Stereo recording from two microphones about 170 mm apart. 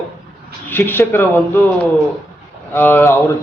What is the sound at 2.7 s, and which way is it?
Speech, 15° left (ahead or behind).